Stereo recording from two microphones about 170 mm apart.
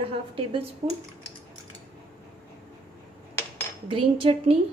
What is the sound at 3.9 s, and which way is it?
Speech, 30° right (ahead or behind).